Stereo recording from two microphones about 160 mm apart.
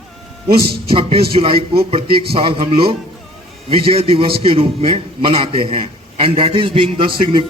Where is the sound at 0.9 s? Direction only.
35° right (ahead or behind).